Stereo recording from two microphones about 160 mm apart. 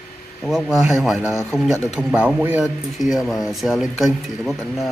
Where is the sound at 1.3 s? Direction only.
15° left (ahead or behind).